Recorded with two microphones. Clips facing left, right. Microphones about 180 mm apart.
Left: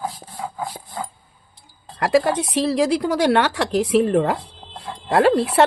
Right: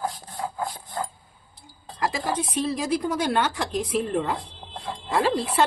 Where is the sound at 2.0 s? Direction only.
70° left (ahead or behind).